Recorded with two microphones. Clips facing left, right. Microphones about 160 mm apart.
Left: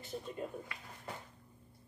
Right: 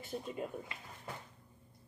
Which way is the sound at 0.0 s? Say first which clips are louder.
Right 1 dB; 5° right (ahead or behind).